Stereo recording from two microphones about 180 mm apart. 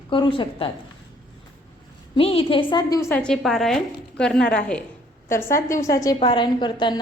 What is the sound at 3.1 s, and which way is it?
A woman's voice, 5° left (ahead or behind).